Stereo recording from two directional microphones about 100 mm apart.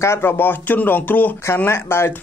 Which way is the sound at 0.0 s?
25° left (ahead or behind).